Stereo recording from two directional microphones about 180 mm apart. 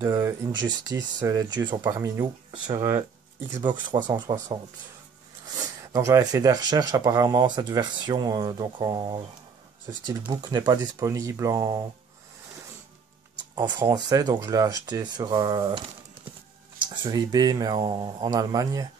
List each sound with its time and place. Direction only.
0.0 s speech: 20° right (ahead or behind)
5.6 s speech: 15° right (ahead or behind)
13.6 s speech: 25° right (ahead or behind)